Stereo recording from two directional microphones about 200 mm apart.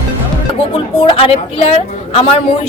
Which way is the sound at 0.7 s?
30° left (ahead or behind).